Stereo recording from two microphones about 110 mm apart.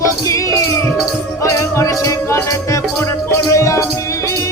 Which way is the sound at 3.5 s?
25° left (ahead or behind).